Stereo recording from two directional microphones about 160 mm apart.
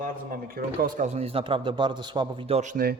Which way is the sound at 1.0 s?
40° right (ahead or behind).